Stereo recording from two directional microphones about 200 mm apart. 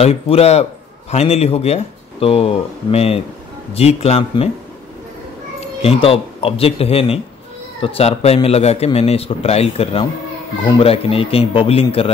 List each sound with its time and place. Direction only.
0.0 s a man's voice: 30° left (ahead or behind)
5.8 s a man's voice: 30° left (ahead or behind)